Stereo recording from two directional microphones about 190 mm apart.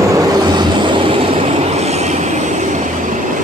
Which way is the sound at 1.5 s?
35° right (ahead or behind).